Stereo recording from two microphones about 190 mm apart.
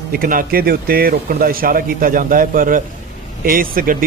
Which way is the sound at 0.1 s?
50° right (ahead or behind).